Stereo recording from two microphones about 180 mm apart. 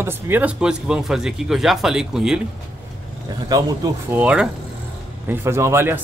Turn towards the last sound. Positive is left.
turn(degrees=-15)  # may be behind; listen again after turning